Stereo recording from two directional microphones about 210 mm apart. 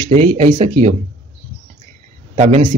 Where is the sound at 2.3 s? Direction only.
35° right (ahead or behind).